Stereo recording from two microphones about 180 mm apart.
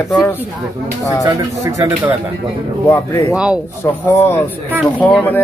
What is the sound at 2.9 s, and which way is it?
Speech, 15° left (ahead or behind).